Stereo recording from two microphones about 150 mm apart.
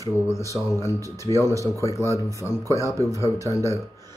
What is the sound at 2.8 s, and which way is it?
Speech, 20° right (ahead or behind).